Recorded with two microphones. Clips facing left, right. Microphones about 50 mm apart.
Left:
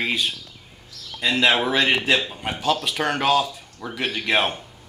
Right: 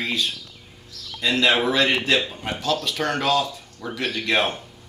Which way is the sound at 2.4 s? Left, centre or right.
Centre.